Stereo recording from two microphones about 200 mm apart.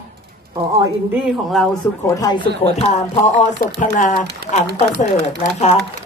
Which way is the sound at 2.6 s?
30° left (ahead or behind).